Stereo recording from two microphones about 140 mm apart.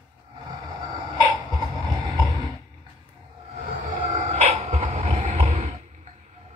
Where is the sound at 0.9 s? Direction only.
30° right (ahead or behind).